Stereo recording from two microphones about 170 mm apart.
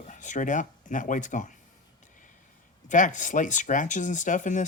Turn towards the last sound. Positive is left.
turn(degrees=45)  # may be behind; listen again after turning